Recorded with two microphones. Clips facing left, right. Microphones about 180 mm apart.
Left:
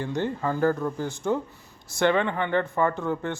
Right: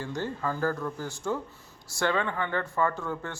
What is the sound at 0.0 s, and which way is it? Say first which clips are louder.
Speech: left 5 dB; 20° left (ahead or behind).